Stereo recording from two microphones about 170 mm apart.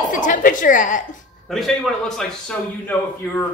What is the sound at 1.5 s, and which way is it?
A man's voice, centre (ahead or behind).